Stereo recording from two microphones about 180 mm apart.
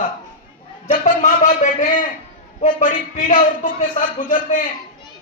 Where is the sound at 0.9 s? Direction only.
45° left (ahead or behind).